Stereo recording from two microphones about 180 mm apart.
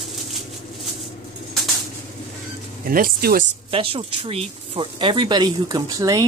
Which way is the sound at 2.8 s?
55° right (ahead or behind).